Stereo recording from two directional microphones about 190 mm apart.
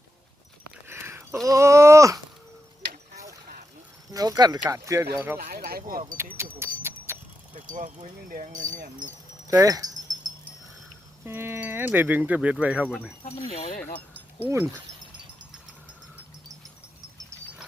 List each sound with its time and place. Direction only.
0.9 s a sound: 10° right (ahead or behind)
4.1 s speech: 20° right (ahead or behind)
5.5 s speech: 55° right (ahead or behind)
6.3 s speech: 15° right (ahead or behind)
7.5 s speech: 45° right (ahead or behind)
9.5 s speech: 20° right (ahead or behind)
11.3 s speech: 10° right (ahead or behind)
13.2 s speech: 35° left (ahead or behind)
14.1 s a sound: 10° right (ahead or behind)